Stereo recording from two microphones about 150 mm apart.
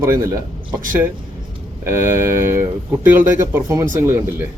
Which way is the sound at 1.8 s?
15° right (ahead or behind).